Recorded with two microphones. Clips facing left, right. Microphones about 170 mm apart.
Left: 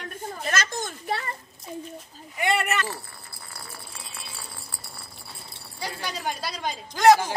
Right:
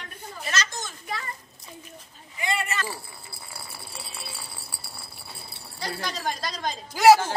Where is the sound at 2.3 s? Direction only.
65° left (ahead or behind).